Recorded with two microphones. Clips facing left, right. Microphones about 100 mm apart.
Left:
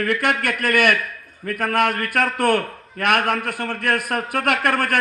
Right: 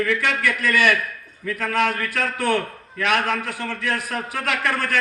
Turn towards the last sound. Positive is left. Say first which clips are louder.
# left 4 dB
turn(degrees=55)  # may be behind; listen again after turning